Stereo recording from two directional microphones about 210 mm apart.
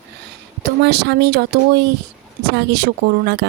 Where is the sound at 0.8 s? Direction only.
55° right (ahead or behind).